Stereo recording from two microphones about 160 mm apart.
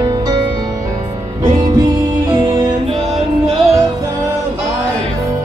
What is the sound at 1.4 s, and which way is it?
Music, 25° right (ahead or behind).